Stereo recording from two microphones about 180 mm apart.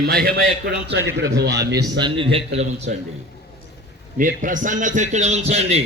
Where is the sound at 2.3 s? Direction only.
35° right (ahead or behind).